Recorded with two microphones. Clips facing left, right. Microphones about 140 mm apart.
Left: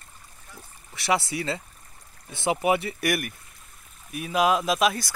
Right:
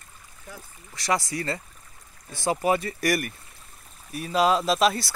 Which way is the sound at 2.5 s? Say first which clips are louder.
Even; 10° left (ahead or behind).